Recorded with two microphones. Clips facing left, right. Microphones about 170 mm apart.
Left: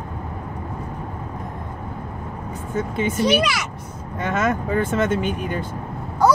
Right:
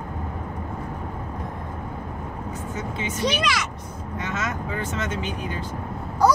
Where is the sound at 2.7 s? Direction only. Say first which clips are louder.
Left 10 dB; 55° left (ahead or behind).